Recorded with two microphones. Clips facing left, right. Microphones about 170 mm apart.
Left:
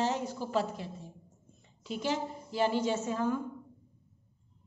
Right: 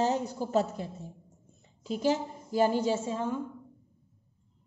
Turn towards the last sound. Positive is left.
turn(degrees=-25)  # may be behind; listen again after turning